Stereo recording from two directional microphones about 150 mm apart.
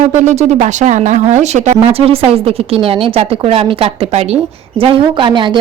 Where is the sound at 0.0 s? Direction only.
55° right (ahead or behind).